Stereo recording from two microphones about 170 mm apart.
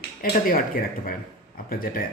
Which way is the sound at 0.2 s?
55° left (ahead or behind).